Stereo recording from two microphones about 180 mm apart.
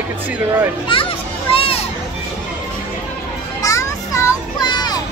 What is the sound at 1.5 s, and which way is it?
Children playing, 30° left (ahead or behind).